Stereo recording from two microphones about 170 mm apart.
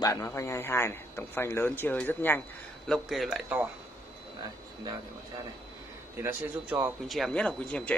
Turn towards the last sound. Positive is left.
turn(degrees=5)  # may be behind; listen again after turning